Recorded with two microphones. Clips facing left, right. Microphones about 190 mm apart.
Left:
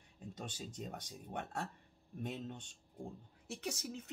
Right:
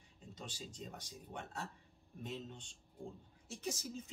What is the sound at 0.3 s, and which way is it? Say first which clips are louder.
A man's voice: left 3 dB; 55° left (ahead or behind).